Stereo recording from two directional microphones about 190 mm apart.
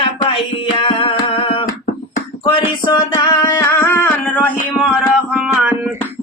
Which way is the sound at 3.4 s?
15° left (ahead or behind).